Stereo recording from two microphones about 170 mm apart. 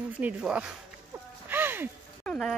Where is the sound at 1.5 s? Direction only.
10° right (ahead or behind).